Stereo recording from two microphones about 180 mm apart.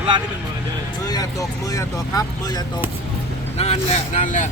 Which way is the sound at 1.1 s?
20° left (ahead or behind).